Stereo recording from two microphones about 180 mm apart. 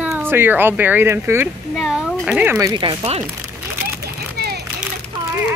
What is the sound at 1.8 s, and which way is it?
Speech, centre (ahead or behind).